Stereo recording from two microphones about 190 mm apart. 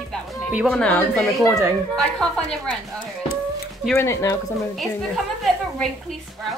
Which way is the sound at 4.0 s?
15° left (ahead or behind).